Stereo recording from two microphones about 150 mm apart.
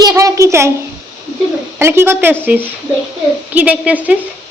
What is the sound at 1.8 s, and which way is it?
Speech, 15° right (ahead or behind).